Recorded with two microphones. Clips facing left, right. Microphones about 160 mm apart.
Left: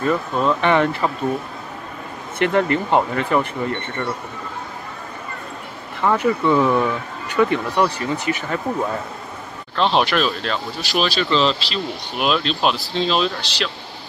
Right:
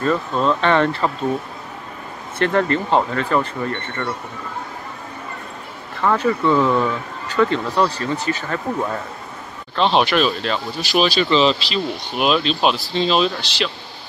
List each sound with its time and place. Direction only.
0.0 s speech: 15° left (ahead or behind)
2.3 s speech: 15° left (ahead or behind)
5.9 s speech: 15° left (ahead or behind)
9.8 s speech: centre (ahead or behind)